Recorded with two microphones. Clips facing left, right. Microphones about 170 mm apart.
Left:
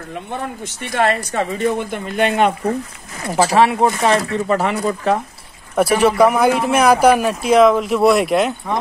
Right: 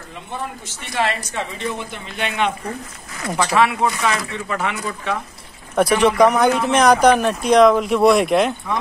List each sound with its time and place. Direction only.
0.1 s speech: 50° left (ahead or behind)
5.8 s speech: 5° left (ahead or behind)